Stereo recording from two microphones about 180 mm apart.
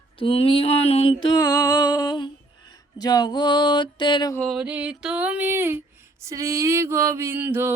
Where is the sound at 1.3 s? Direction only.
20° left (ahead or behind).